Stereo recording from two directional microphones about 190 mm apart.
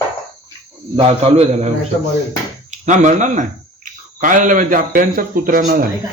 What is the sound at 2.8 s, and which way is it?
Speech, 40° right (ahead or behind).